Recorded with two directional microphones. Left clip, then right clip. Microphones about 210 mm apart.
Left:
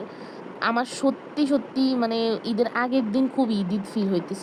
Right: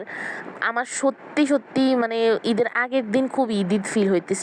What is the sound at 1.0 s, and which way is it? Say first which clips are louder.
Speech: right 3 dB; 70° right (ahead or behind).